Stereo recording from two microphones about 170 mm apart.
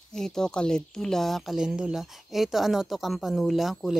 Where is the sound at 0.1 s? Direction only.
5° left (ahead or behind).